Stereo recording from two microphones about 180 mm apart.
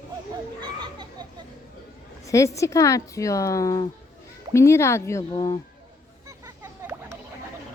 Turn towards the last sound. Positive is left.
turn(degrees=-15)  # may be behind; listen again after turning